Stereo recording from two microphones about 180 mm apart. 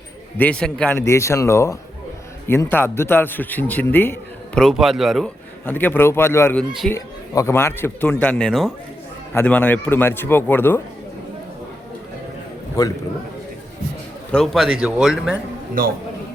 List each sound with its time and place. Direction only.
0.3 s a man's voice: 5° left (ahead or behind)
5.6 s a man's voice: 10° left (ahead or behind)
12.8 s a man's voice: 20° left (ahead or behind)
14.3 s speech: centre (ahead or behind)